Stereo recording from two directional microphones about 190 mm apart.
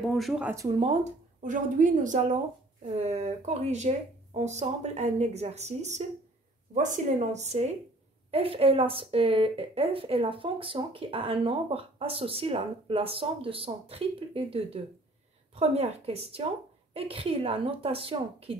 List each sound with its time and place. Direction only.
0.1 s speech: centre (ahead or behind)
0.7 s speech: 35° right (ahead or behind)